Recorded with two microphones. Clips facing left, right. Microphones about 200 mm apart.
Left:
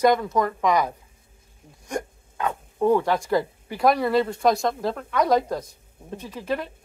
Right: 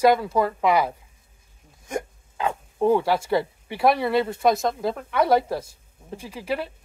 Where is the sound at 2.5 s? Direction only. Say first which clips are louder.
Even; 15° right (ahead or behind).